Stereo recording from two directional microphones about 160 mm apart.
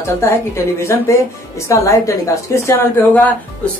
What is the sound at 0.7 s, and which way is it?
A woman's voice, 15° left (ahead or behind).